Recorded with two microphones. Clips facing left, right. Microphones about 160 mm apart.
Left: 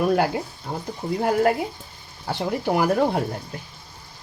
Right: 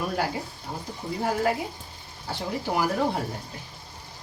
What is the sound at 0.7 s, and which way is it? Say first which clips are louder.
Speech: left 5 dB; 75° left (ahead or behind).